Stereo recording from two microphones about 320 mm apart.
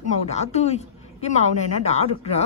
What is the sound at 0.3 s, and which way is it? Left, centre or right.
A woman's voice, left.